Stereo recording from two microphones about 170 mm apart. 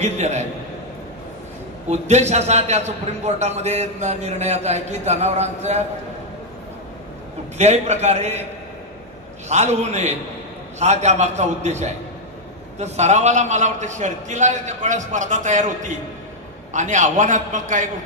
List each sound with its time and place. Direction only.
0.0 s a man's voice: 40° right (ahead or behind)
1.9 s a man's voice: 40° right (ahead or behind)
7.5 s a man's voice: 40° right (ahead or behind)
9.5 s a man's voice: 40° right (ahead or behind)